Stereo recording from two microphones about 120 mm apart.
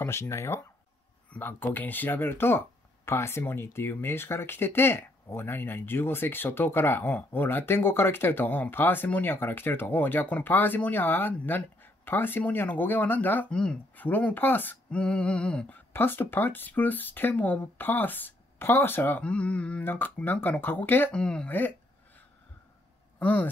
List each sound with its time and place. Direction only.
0.0 s speech: 20° left (ahead or behind)
23.1 s speech: 15° left (ahead or behind)